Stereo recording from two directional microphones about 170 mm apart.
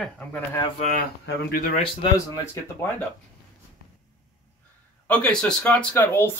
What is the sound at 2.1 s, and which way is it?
Speech, 15° left (ahead or behind).